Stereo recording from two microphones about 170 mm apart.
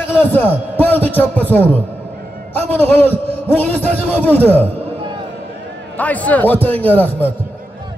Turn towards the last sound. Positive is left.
turn(degrees=10)  # may be behind; listen again after turning